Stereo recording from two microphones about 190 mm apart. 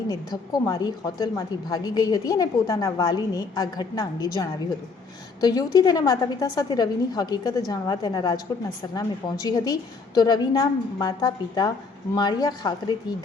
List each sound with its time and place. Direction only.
0.1 s a woman's voice: 20° left (ahead or behind)